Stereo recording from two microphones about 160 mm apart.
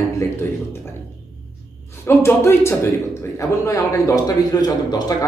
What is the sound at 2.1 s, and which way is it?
A man's voice, 15° left (ahead or behind).